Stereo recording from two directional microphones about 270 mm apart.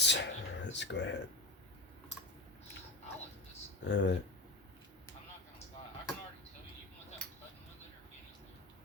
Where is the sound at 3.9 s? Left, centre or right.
Left.